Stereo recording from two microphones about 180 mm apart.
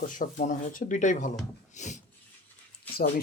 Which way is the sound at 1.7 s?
40° left (ahead or behind).